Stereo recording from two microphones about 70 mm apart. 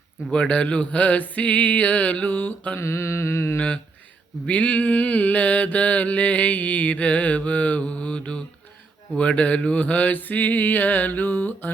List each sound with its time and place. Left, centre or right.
0.3 s mantra: centre
2.7 s mantra: left
4.4 s mantra: left